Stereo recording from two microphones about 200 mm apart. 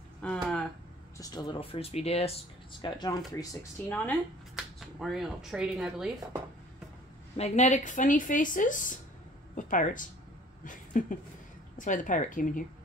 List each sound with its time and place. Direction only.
0.2 s a sound: 5° left (ahead or behind)
1.1 s speech: 20° left (ahead or behind)
3.8 s speech: 10° left (ahead or behind)
7.3 s speech: 35° left (ahead or behind)